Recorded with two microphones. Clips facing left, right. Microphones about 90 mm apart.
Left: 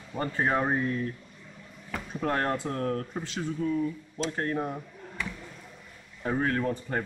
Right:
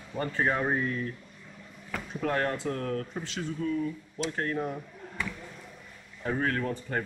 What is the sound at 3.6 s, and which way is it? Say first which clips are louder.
Speech: left 2 dB; 15° left (ahead or behind).